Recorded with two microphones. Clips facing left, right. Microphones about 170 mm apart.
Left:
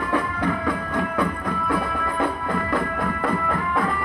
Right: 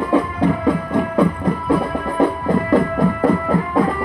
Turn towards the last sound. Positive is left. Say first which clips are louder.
# right 7 dB
turn(degrees=-35)  # may be behind; listen again after turning